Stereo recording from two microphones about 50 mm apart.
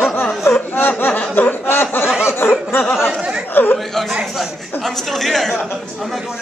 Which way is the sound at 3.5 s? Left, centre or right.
Left.